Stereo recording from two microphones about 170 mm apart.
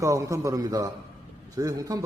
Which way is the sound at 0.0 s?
20° right (ahead or behind).